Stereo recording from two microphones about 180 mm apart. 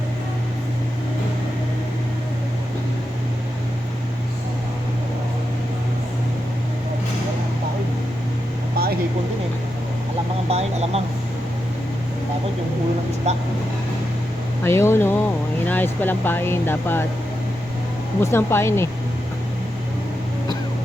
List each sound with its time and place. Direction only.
10.5 s speech: 35° right (ahead or behind)
13.3 s speech: 40° right (ahead or behind)
14.6 s speech: 15° left (ahead or behind)
18.2 s speech: 15° left (ahead or behind)